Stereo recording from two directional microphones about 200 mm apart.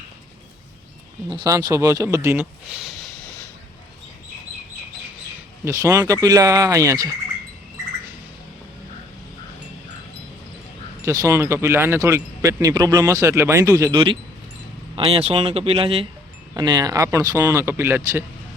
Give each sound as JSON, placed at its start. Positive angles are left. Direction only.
{"t": 1.3, "sound": "speech", "side_deg": -20}
{"t": 5.6, "sound": "speech", "side_deg": -15}
{"t": 11.0, "sound": "speech", "side_deg": -15}